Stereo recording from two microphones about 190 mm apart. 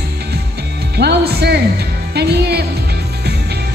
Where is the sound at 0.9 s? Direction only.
60° right (ahead or behind).